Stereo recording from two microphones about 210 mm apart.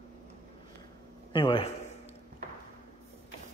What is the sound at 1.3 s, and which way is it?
Speech, 25° left (ahead or behind).